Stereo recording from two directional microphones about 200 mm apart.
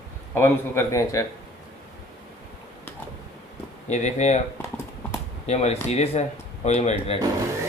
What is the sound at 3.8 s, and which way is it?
Speech, 35° left (ahead or behind).